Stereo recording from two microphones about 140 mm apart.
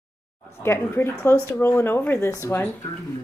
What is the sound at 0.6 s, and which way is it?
Speech, 15° left (ahead or behind).